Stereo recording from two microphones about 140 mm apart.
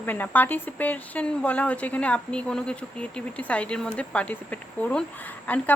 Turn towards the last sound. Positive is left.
turn(degrees=10)  # may be behind; listen again after turning